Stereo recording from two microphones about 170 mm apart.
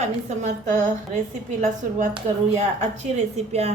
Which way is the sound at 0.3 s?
45° right (ahead or behind).